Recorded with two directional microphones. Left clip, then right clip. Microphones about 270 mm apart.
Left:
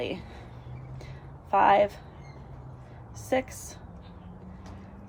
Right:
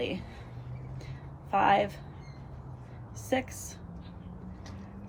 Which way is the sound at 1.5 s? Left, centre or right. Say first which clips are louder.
Left 4 dB; centre.